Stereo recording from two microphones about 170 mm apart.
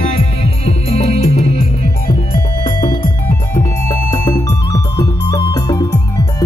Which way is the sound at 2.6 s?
25° left (ahead or behind).